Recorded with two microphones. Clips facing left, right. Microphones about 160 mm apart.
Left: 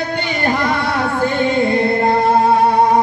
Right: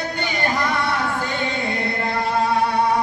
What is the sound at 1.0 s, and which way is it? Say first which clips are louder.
Singing: left 7 dB; 55° left (ahead or behind).